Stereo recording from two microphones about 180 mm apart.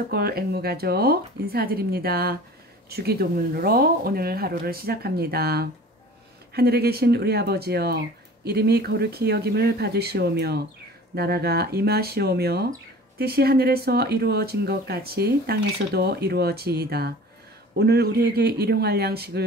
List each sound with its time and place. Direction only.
0.1 s speech: 60° right (ahead or behind)